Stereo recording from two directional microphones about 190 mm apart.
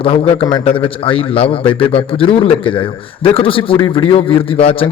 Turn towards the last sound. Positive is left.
turn(degrees=30)  # may be behind; listen again after turning